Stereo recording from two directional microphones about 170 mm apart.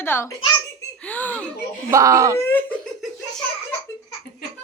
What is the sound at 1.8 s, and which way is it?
Speech, 20° right (ahead or behind).